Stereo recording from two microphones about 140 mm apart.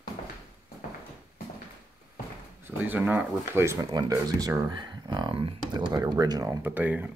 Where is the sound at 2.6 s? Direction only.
15° right (ahead or behind).